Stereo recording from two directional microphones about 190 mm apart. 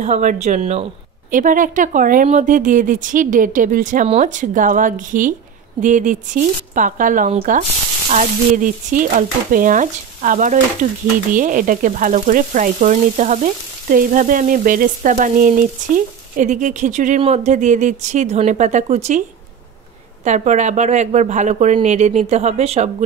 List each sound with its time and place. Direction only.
0.0 s speech: 40° right (ahead or behind)
1.3 s frying: 45° right (ahead or behind)
7.2 s speech: 35° right (ahead or behind)
8.1 s frying: 40° right (ahead or behind)
17.5 s speech: 40° right (ahead or behind)
20.2 s speech: 40° right (ahead or behind)